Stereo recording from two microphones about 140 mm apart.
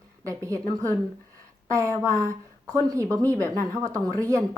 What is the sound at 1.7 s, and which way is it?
Speech, 20° right (ahead or behind).